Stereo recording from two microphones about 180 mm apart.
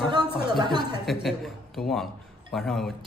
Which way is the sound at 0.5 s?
25° right (ahead or behind).